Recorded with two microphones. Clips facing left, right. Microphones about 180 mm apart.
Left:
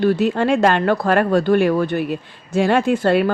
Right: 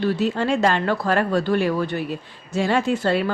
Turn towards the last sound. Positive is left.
turn(degrees=55)  # may be behind; listen again after turning